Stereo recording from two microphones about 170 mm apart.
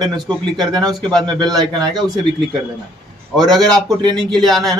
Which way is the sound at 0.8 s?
5° left (ahead or behind).